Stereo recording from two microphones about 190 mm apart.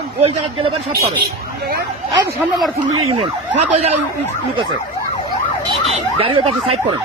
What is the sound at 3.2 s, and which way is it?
Speech, 35° right (ahead or behind).